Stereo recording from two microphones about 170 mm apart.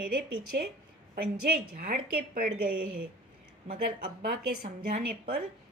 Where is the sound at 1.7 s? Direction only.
55° right (ahead or behind).